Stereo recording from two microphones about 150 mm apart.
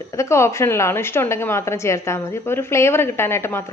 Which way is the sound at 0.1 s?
20° left (ahead or behind).